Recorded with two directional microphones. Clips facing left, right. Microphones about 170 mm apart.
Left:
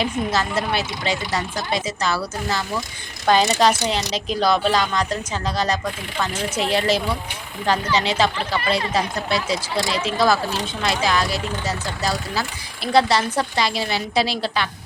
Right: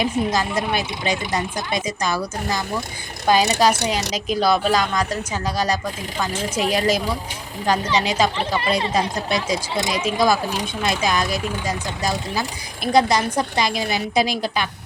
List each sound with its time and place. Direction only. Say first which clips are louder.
0.0 s speech: right 1 dB; 15° right (ahead or behind)
8.4 s speech: right 1 dB; 20° right (ahead or behind)